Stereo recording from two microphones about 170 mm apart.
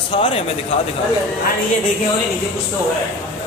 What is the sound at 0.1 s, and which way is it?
Speech, 30° left (ahead or behind).